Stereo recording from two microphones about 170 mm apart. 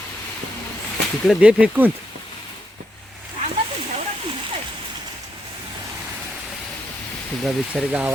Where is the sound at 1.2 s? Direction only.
5° right (ahead or behind).